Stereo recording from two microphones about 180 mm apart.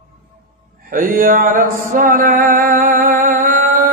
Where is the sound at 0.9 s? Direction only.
50° right (ahead or behind).